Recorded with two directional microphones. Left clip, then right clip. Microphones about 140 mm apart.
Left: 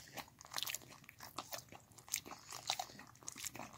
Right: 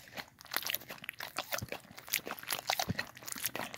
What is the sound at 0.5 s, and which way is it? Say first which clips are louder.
Crunch: right 7 dB; 25° right (ahead or behind).